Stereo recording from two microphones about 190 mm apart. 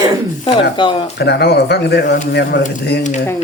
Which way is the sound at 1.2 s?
60° left (ahead or behind).